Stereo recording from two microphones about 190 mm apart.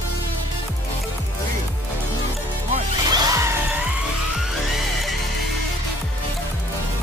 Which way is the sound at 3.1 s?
20° right (ahead or behind).